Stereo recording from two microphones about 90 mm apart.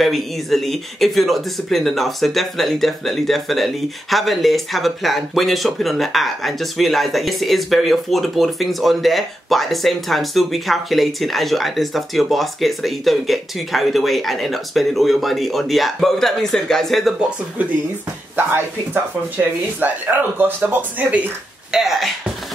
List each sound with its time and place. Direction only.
0.0 s speech: centre (ahead or behind)
19.3 s speech: 20° right (ahead or behind)
21.7 s speech: centre (ahead or behind)